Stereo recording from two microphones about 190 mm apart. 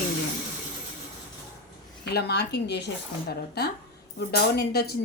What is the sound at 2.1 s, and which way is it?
Speech, 60° left (ahead or behind).